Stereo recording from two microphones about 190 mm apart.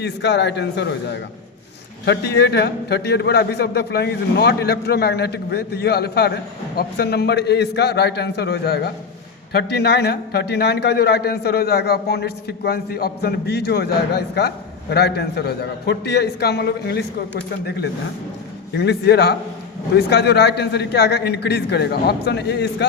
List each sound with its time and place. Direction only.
0.0 s a man's voice: 65° left (ahead or behind)
18.8 s a man's voice: 60° left (ahead or behind)